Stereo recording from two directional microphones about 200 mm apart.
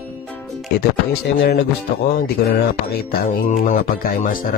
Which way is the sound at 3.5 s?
40° left (ahead or behind).